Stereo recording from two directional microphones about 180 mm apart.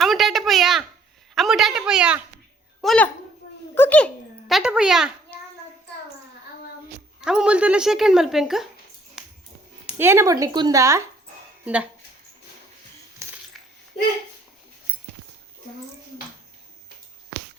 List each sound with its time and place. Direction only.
0.0 s a sound: centre (ahead or behind)
1.4 s speech: centre (ahead or behind)
2.8 s speech: 5° left (ahead or behind)
7.2 s speech: 5° right (ahead or behind)
9.2 s dog: 5° right (ahead or behind)
9.8 s a woman's voice: 10° right (ahead or behind)
11.6 s speech: 5° right (ahead or behind)
13.5 s a sound: centre (ahead or behind)